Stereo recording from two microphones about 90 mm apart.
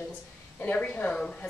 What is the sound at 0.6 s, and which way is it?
Speech, 15° left (ahead or behind).